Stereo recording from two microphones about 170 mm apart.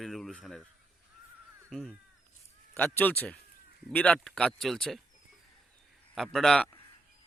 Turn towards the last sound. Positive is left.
turn(degrees=5)  # may be behind; listen again after turning